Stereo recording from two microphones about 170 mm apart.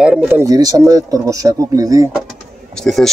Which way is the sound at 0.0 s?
5° right (ahead or behind).